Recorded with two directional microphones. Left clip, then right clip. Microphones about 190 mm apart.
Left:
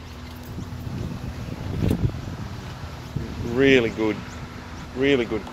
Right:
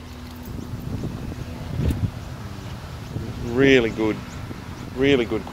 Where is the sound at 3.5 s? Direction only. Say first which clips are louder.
Right 1 dB; 10° right (ahead or behind).